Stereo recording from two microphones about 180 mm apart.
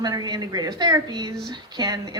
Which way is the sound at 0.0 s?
20° right (ahead or behind).